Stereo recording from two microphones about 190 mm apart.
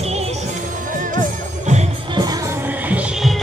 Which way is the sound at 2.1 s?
20° right (ahead or behind).